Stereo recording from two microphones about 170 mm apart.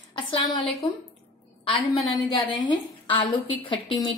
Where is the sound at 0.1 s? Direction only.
25° left (ahead or behind).